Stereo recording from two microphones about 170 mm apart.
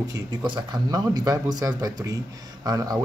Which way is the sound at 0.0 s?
20° right (ahead or behind).